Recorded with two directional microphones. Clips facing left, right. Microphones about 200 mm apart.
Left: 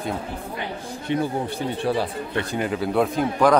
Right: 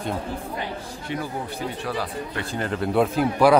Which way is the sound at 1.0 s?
25° left (ahead or behind).